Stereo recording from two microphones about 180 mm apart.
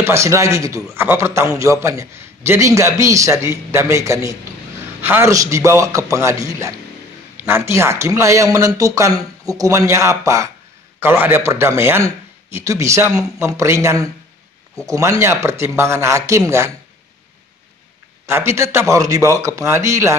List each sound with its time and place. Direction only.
0.0 s a man's voice: 15° right (ahead or behind)
18.2 s a man's voice: 15° right (ahead or behind)